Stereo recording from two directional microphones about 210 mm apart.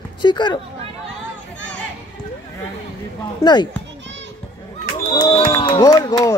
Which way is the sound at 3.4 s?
20° left (ahead or behind).